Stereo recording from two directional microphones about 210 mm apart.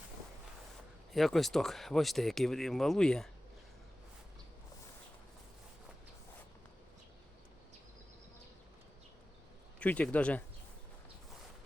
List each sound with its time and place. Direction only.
1.1 s speech: centre (ahead or behind)
9.8 s speech: 5° left (ahead or behind)